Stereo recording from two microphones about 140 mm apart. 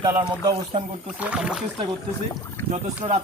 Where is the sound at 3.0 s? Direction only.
45° right (ahead or behind).